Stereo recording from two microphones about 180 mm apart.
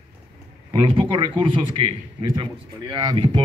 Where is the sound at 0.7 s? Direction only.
30° right (ahead or behind).